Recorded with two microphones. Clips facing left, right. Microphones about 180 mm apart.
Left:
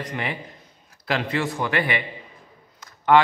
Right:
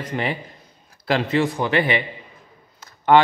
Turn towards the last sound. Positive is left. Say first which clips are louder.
# right 2 dB
turn(degrees=-30)  # may be behind; listen again after turning